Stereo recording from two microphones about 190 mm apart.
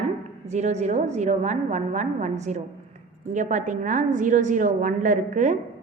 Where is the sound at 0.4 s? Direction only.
35° right (ahead or behind).